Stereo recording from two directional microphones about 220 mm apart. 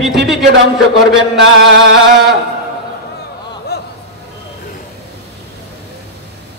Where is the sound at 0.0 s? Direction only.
Centre (ahead or behind).